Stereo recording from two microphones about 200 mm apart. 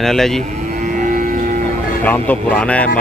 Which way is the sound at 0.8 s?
40° right (ahead or behind).